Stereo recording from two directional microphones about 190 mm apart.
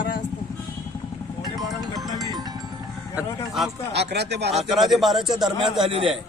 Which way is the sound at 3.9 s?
60° right (ahead or behind).